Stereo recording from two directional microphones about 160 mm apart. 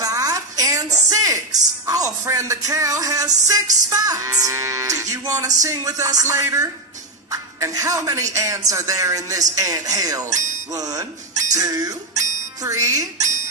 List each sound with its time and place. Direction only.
0.0 s a sound: 20° right (ahead or behind)
1.9 s speech: 20° right (ahead or behind)
7.2 s music: 20° right (ahead or behind)
8.3 s speech: 20° right (ahead or behind)